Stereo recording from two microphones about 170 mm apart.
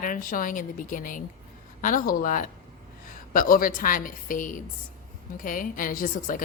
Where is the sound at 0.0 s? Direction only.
50° left (ahead or behind).